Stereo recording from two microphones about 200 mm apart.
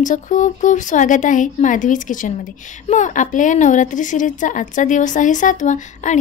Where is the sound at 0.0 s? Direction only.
40° left (ahead or behind).